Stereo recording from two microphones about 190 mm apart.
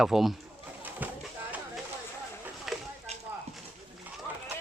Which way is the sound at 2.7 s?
Centre (ahead or behind).